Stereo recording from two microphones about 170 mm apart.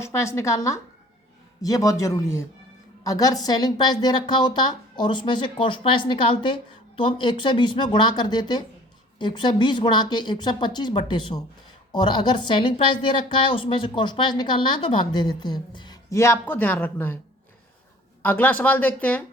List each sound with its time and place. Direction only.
0.0 s a woman's voice: 15° left (ahead or behind)
18.2 s speech: 10° left (ahead or behind)